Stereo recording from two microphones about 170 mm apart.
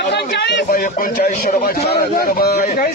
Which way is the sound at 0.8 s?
55° left (ahead or behind).